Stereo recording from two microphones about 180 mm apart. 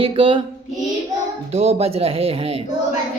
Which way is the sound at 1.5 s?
35° right (ahead or behind).